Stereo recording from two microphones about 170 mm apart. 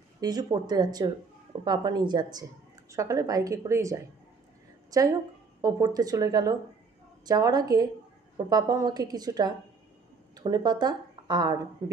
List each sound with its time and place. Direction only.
0.2 s a woman's voice: 20° right (ahead or behind)